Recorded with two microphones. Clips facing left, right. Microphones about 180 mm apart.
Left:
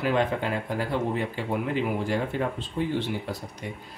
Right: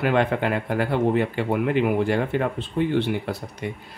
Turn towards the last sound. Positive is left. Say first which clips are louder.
# right 5 dB
turn(degrees=-65)  # may be behind; listen again after turning